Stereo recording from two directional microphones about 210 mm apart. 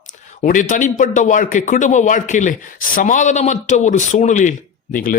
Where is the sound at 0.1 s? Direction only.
35° left (ahead or behind).